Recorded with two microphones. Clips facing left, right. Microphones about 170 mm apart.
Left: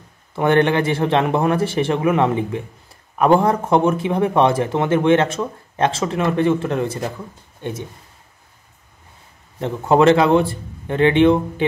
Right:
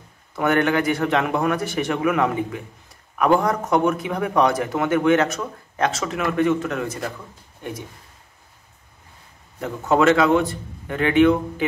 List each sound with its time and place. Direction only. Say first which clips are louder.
0.4 s speech: left 3 dB; 25° left (ahead or behind)
9.6 s speech: left 4 dB; 30° left (ahead or behind)